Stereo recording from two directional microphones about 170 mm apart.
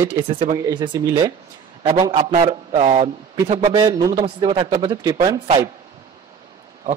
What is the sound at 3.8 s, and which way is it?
Speech, 20° right (ahead or behind).